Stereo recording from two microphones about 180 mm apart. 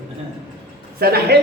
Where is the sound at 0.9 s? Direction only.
60° right (ahead or behind).